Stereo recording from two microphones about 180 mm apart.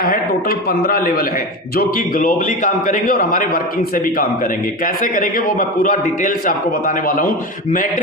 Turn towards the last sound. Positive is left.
turn(degrees=50)  # may be behind; listen again after turning